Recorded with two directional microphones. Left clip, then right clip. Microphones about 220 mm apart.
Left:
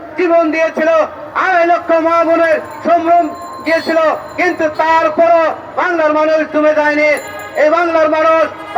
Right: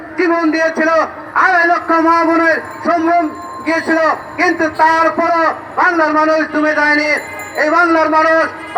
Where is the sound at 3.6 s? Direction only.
15° left (ahead or behind).